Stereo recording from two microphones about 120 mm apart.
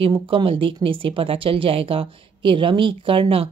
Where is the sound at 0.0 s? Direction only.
45° right (ahead or behind).